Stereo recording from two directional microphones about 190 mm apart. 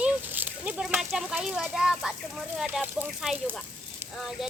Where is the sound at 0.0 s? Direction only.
10° right (ahead or behind).